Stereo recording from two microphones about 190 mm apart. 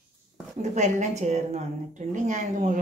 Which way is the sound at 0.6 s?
35° right (ahead or behind).